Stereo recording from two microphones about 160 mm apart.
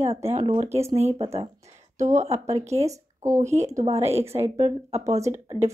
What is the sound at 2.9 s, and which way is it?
Speech, 20° right (ahead or behind).